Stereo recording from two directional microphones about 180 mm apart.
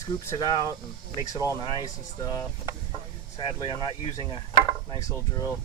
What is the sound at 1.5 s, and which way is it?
Speech, 20° left (ahead or behind).